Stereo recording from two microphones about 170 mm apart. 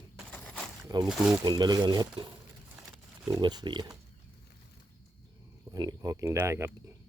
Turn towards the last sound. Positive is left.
turn(degrees=-15)  # may be behind; listen again after turning